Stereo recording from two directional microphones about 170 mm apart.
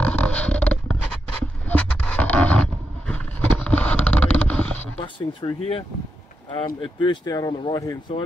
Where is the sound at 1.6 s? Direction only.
10° left (ahead or behind).